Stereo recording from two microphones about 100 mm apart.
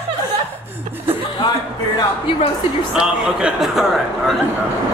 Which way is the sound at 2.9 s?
10° right (ahead or behind).